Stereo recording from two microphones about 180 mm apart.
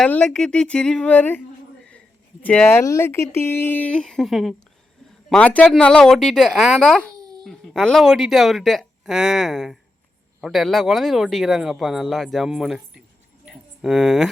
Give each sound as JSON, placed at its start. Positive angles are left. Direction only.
{"t": 0.0, "sound": "speech", "side_deg": 5}
{"t": 2.4, "sound": "speech", "side_deg": 10}
{"t": 7.2, "sound": "babbling", "side_deg": -20}
{"t": 7.4, "sound": "speech", "side_deg": 0}
{"t": 13.4, "sound": "a sound", "side_deg": 0}